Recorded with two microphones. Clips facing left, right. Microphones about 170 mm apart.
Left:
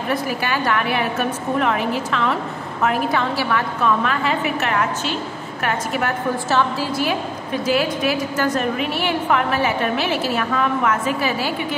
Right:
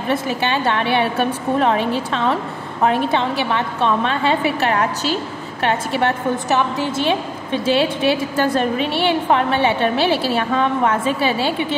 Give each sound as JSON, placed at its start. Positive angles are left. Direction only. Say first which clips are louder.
{"t": 0.1, "sound": "a woman's voice", "louder": "right 3 dB", "side_deg": -25}